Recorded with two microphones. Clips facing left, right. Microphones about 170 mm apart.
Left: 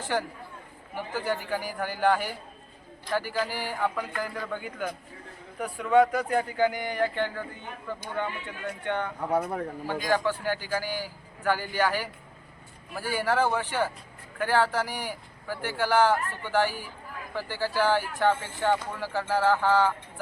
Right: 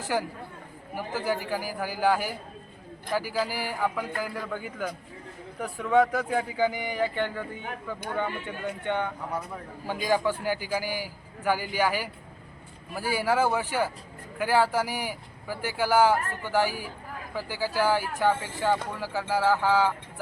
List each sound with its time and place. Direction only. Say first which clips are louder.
0.1 s a man's voice: right 1 dB; 5° right (ahead or behind)
6.1 s speech: left 1 dB; 5° right (ahead or behind)
8.2 s speech: right 2 dB; 10° right (ahead or behind)
9.3 s a man's voice: left 7 dB; 65° left (ahead or behind)
9.8 s speech: right 2 dB; 10° right (ahead or behind)